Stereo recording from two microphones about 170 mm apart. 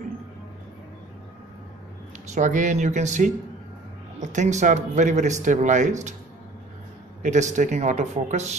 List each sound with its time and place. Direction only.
2.3 s speech: 45° right (ahead or behind)
7.2 s speech: 45° right (ahead or behind)